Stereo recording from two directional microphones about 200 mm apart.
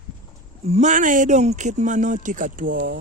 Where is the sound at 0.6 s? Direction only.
35° right (ahead or behind).